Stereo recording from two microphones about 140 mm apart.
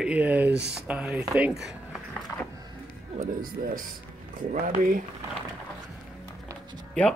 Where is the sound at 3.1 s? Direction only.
75° right (ahead or behind).